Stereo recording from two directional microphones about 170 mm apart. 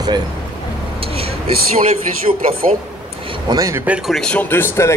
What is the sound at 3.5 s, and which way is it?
Speech, 20° right (ahead or behind).